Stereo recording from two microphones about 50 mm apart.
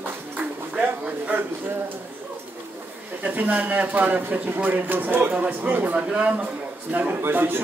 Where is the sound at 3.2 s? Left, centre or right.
Right.